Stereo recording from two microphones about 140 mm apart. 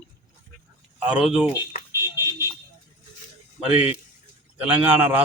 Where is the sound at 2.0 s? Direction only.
20° right (ahead or behind).